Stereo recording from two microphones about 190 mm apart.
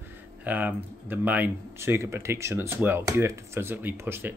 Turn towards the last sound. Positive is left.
turn(degrees=-10)  # may be behind; listen again after turning